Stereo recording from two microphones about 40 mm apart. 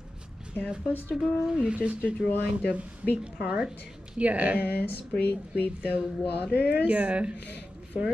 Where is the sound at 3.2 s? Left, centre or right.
Right.